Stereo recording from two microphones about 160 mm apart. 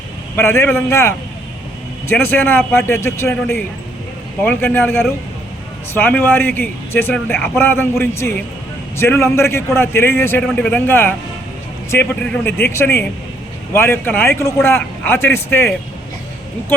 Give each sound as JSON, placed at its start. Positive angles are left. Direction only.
{"t": 0.3, "sound": "speech", "side_deg": 15}